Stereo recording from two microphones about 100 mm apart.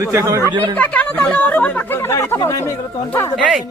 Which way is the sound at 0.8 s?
15° left (ahead or behind).